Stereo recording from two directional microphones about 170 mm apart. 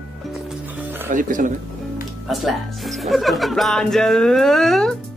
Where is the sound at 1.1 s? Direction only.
50° right (ahead or behind).